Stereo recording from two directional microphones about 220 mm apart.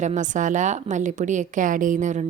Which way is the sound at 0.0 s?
35° right (ahead or behind).